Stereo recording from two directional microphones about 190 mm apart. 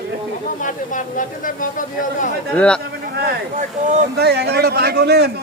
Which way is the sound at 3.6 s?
40° right (ahead or behind).